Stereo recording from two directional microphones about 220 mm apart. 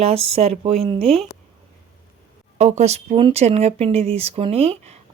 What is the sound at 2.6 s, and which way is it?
Speech, 30° right (ahead or behind).